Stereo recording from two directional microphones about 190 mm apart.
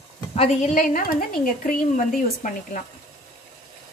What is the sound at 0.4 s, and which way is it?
A woman's voice, 35° left (ahead or behind).